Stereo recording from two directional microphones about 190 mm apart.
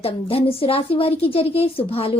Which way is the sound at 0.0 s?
30° left (ahead or behind).